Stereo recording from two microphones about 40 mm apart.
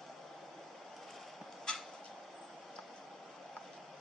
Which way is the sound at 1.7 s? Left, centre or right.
Left.